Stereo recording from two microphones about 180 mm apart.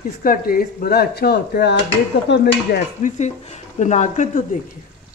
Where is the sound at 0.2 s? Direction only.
55° left (ahead or behind).